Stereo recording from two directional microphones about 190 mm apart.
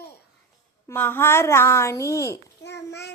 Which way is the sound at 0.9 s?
10° left (ahead or behind).